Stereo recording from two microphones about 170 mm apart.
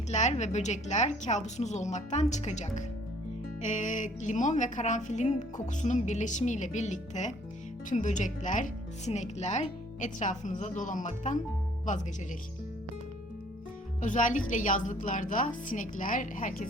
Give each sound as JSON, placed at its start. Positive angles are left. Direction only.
{"t": 0.1, "sound": "speech", "side_deg": 45}
{"t": 14.0, "sound": "speech", "side_deg": 50}